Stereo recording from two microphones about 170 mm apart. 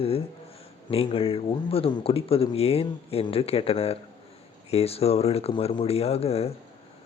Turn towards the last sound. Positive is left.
turn(degrees=35)  # may be behind; listen again after turning